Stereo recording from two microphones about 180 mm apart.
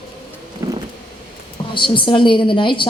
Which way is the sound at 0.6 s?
15° right (ahead or behind).